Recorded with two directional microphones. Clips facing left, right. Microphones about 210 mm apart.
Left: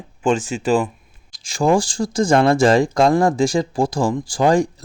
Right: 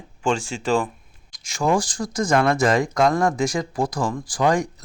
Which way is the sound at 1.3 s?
30° left (ahead or behind).